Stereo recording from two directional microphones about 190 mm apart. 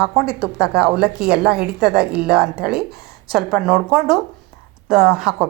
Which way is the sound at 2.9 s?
55° right (ahead or behind).